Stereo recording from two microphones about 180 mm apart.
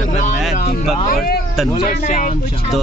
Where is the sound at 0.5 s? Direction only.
55° left (ahead or behind).